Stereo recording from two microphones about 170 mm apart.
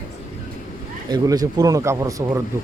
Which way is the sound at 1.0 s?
20° right (ahead or behind).